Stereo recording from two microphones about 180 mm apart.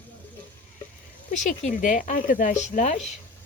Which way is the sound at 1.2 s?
40° left (ahead or behind).